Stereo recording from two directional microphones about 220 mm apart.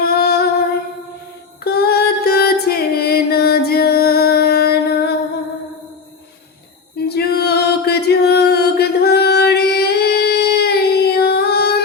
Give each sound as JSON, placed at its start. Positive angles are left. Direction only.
{"t": 0.1, "sound": "female singing", "side_deg": 45}
{"t": 1.6, "sound": "music", "side_deg": 45}
{"t": 7.1, "sound": "music", "side_deg": 45}